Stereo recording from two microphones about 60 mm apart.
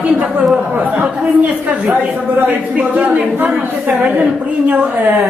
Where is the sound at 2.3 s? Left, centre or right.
Right.